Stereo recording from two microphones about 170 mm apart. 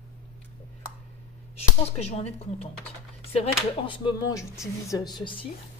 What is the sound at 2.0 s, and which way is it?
Speech, 35° left (ahead or behind).